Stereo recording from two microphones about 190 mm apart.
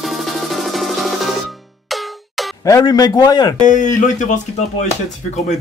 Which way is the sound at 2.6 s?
20° left (ahead or behind).